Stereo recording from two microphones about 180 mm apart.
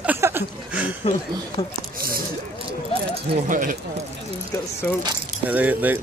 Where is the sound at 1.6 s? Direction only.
35° left (ahead or behind).